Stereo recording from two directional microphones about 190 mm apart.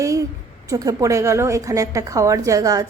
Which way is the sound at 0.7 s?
15° right (ahead or behind).